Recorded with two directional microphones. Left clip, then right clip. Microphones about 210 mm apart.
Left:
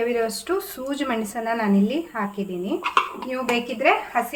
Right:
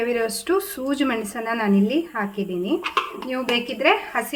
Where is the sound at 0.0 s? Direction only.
25° right (ahead or behind).